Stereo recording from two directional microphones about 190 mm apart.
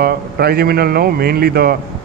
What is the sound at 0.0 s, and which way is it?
A man's voice, 55° right (ahead or behind).